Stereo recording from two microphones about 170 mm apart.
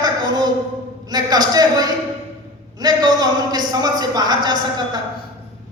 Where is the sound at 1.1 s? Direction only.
25° right (ahead or behind).